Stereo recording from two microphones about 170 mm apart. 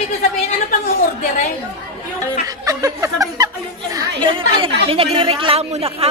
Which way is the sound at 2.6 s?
20° right (ahead or behind).